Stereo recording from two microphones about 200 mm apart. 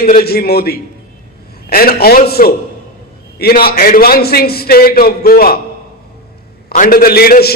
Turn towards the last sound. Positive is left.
turn(degrees=50)  # may be behind; listen again after turning